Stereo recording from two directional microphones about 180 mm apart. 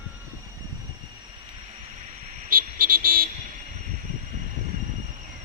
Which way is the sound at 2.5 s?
50° right (ahead or behind).